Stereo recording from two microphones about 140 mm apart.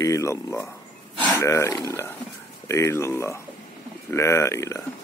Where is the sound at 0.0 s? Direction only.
20° left (ahead or behind).